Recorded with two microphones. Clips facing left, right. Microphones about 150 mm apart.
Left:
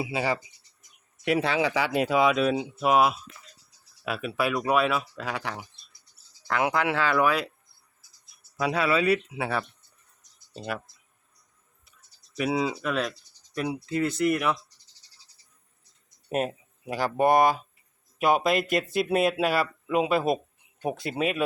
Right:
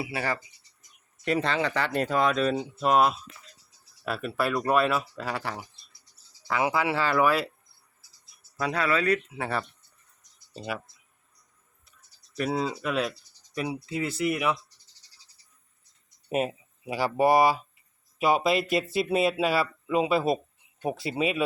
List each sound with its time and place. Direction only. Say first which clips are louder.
0.0 s speech: left 3 dB; 20° left (ahead or behind); by 7.5 s 5° right (ahead or behind)
8.5 s speech: left 2 dB; 10° left (ahead or behind)
12.4 s speech: left 2 dB; 5° left (ahead or behind)
16.3 s speech: even; 5° right (ahead or behind)